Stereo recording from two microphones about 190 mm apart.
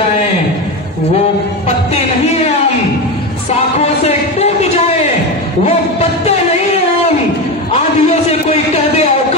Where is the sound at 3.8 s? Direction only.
35° left (ahead or behind).